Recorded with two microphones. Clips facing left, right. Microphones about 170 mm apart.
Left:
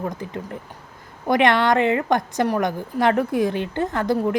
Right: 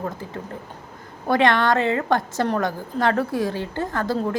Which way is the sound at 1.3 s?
20° left (ahead or behind).